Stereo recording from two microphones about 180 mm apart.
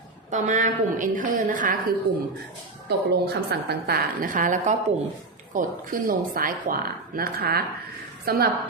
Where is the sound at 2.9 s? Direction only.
65° right (ahead or behind).